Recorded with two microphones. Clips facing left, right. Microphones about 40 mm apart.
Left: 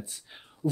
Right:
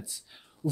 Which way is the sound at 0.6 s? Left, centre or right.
Left.